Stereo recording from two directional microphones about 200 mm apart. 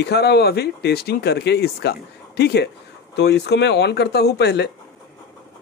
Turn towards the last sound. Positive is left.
turn(degrees=55)  # may be behind; listen again after turning